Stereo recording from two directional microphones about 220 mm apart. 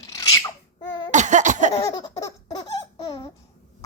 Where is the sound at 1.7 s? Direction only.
15° left (ahead or behind).